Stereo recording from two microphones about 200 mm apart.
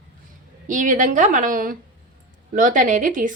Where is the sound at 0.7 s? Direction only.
40° right (ahead or behind).